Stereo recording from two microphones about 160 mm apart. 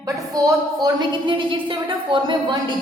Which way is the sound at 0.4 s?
25° right (ahead or behind).